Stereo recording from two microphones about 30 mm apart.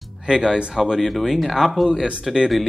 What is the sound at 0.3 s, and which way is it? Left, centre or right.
Speech, right.